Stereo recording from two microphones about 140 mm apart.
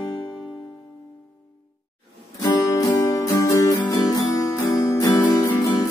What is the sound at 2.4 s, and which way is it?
Guitar, 25° left (ahead or behind).